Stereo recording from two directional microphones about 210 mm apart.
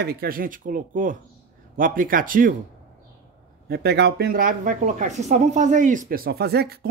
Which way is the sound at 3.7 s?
50° right (ahead or behind).